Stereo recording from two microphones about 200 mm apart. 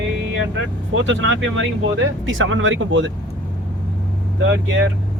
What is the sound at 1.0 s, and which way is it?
Speech, 70° right (ahead or behind).